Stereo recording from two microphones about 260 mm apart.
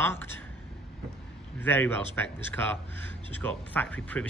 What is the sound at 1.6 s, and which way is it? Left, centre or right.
A man's voice, centre.